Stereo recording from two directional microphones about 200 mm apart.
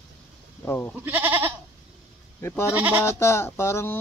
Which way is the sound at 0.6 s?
10° left (ahead or behind).